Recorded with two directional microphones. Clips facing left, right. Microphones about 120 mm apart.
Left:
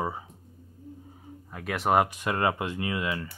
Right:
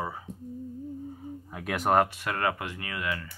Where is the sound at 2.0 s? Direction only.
20° left (ahead or behind).